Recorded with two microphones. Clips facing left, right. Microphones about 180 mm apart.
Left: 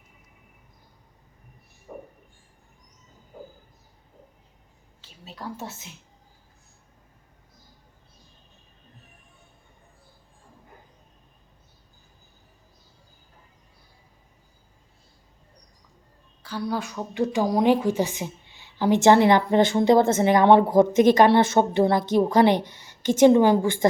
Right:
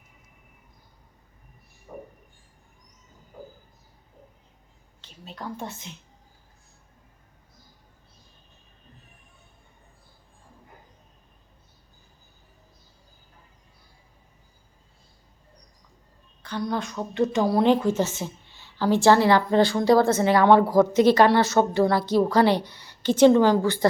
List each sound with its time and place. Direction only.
4.9 s whispering: 5° left (ahead or behind)
16.4 s a woman's voice: 5° left (ahead or behind)